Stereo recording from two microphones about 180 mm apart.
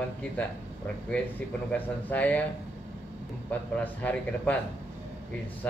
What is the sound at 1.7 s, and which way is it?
Speech, 10° left (ahead or behind).